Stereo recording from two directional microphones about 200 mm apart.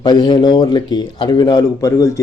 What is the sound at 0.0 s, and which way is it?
Speech, 20° left (ahead or behind).